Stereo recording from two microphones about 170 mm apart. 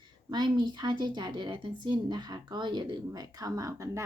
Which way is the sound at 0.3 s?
25° right (ahead or behind).